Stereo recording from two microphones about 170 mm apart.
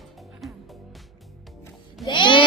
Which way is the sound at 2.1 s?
30° left (ahead or behind).